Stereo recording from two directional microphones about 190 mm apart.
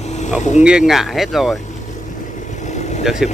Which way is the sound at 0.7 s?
5° right (ahead or behind).